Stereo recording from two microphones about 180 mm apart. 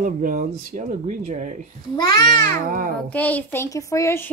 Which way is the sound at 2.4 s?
50° right (ahead or behind).